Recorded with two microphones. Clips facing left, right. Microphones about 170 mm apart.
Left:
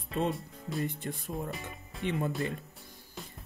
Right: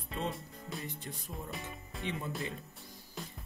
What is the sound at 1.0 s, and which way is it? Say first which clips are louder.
Speech: left 7 dB; 55° left (ahead or behind).